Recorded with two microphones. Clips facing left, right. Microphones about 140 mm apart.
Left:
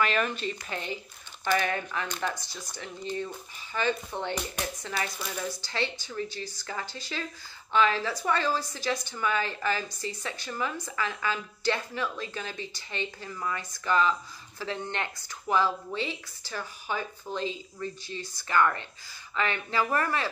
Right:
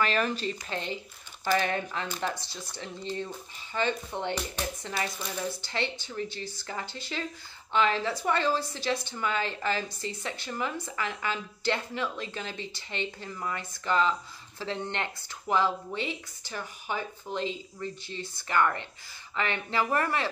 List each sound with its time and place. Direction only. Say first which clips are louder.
0.0 s a woman's voice: even; 35° right (ahead or behind)